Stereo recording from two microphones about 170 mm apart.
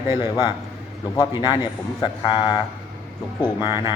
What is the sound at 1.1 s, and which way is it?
A man's voice, 25° left (ahead or behind).